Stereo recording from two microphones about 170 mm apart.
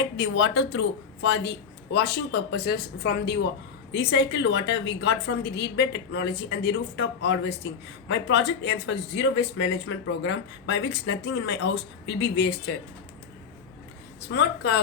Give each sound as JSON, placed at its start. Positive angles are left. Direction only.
{"t": 0.0, "sound": "a woman's voice", "side_deg": 90}
{"t": 14.3, "sound": "a woman's voice", "side_deg": 80}